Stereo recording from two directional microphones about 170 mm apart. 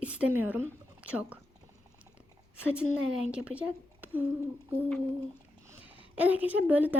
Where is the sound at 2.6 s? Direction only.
5° right (ahead or behind).